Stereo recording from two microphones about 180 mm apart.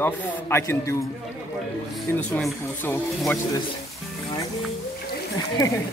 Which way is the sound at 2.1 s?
10° left (ahead or behind).